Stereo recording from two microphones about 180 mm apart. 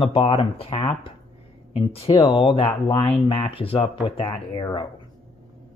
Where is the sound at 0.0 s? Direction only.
30° left (ahead or behind).